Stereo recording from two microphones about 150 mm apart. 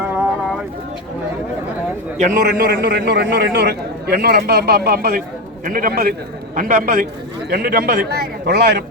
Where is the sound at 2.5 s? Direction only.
90° right.